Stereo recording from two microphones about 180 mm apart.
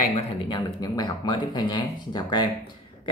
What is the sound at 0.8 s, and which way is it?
Speech, 20° left (ahead or behind).